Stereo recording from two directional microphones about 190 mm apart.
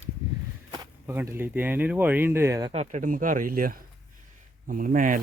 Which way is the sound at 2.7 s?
40° right (ahead or behind).